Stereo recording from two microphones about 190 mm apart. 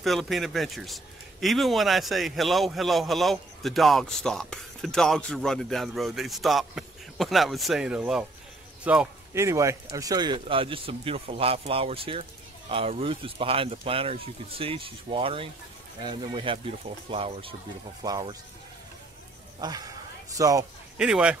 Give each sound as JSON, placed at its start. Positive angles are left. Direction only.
{"t": 0.0, "sound": "speech", "side_deg": 0}
{"t": 18.0, "sound": "speech", "side_deg": -20}
{"t": 19.6, "sound": "a man's voice", "side_deg": -20}
{"t": 21.0, "sound": "speech", "side_deg": -5}